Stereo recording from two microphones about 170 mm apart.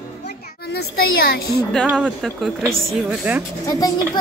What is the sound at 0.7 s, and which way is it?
Speech, 65° left (ahead or behind).